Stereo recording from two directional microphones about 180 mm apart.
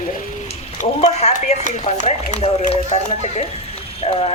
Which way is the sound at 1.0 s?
40° left (ahead or behind).